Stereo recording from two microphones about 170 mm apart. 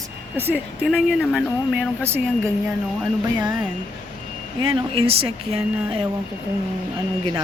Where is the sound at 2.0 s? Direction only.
15° right (ahead or behind).